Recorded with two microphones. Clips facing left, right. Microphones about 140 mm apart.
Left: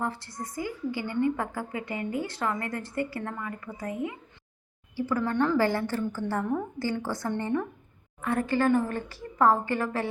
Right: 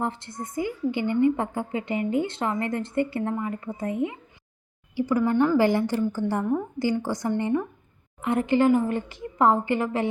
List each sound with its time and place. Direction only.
0.0 s a woman's voice: 20° right (ahead or behind)